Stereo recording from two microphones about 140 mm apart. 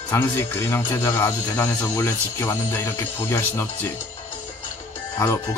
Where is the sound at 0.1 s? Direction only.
20° left (ahead or behind).